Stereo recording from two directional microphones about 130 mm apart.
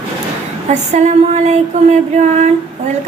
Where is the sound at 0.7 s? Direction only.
65° right (ahead or behind).